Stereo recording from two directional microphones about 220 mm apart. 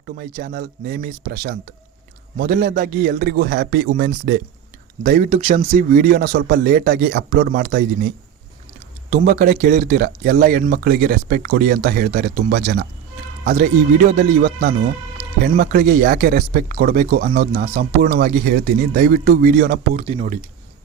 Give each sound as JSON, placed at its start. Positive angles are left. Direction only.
{"t": 0.0, "sound": "speech", "side_deg": -40}
{"t": 9.0, "sound": "speech", "side_deg": -35}